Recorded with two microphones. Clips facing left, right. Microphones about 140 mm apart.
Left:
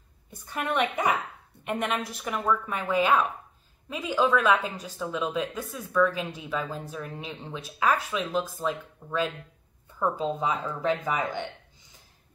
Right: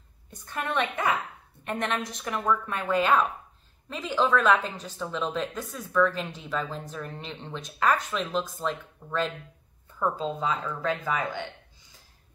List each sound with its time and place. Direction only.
0.3 s a woman's voice: 10° left (ahead or behind)